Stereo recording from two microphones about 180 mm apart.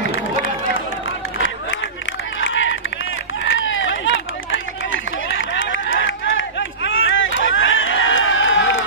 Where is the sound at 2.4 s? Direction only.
90° left.